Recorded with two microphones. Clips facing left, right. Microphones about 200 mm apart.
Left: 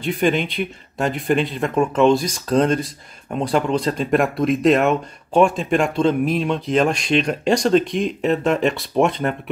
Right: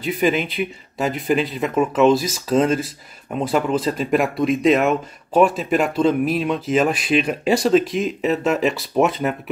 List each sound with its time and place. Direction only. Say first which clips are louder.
0.0 s speech: even; centre (ahead or behind)